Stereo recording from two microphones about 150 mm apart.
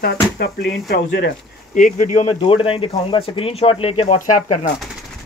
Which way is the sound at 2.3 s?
35° left (ahead or behind).